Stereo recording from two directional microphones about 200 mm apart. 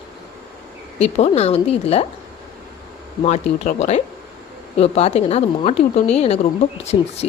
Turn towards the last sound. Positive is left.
turn(degrees=30)  # may be behind; listen again after turning